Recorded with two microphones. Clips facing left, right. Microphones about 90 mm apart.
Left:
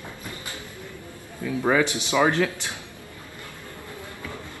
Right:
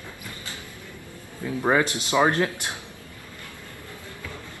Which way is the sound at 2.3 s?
45° right (ahead or behind).